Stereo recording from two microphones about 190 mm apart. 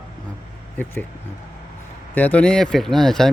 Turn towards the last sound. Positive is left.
turn(degrees=0)  # may be behind; listen again after turning